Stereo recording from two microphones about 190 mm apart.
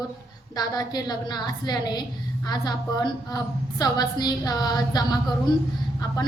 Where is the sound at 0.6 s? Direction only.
20° left (ahead or behind).